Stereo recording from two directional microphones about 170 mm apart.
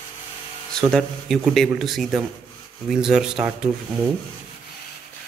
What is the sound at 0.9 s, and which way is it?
Speech, centre (ahead or behind).